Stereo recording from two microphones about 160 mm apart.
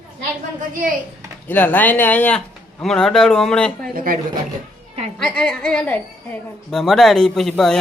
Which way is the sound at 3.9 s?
65° right (ahead or behind).